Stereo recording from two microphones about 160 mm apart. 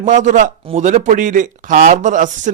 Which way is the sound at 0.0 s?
50° right (ahead or behind).